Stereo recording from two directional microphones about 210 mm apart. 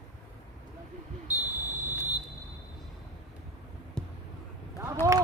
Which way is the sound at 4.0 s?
5° left (ahead or behind).